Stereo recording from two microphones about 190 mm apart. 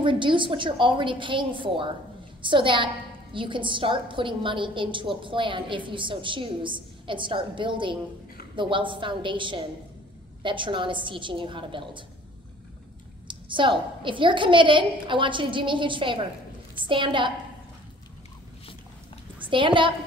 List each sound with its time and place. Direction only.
0.0 s a woman's voice: 25° right (ahead or behind)
13.3 s a woman's voice: 25° right (ahead or behind)
19.4 s a woman's voice: 25° right (ahead or behind)